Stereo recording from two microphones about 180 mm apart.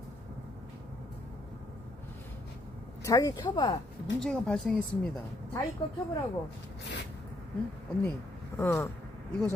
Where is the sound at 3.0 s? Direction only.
20° left (ahead or behind).